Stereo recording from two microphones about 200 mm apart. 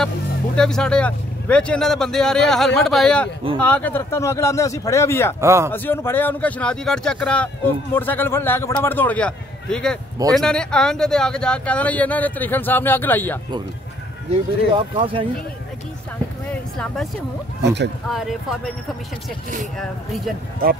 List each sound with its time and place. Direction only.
0.6 s speech: 5° left (ahead or behind)
5.4 s speech: 15° right (ahead or behind)
5.7 s speech: 10° left (ahead or behind)
14.3 s speech: 25° right (ahead or behind)
16.7 s speech: centre (ahead or behind)
17.6 s speech: 60° right (ahead or behind)
18.0 s speech: centre (ahead or behind)
19.8 s speech: centre (ahead or behind)